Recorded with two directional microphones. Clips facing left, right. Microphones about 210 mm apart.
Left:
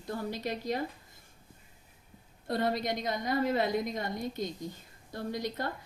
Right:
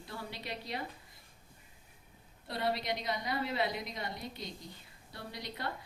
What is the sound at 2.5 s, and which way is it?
Speech, 45° left (ahead or behind).